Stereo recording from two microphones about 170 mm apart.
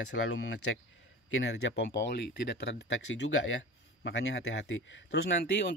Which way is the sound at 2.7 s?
90° left.